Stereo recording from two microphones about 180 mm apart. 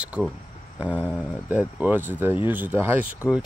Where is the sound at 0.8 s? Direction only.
10° right (ahead or behind).